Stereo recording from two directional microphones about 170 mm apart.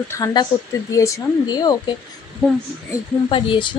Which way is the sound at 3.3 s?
30° left (ahead or behind).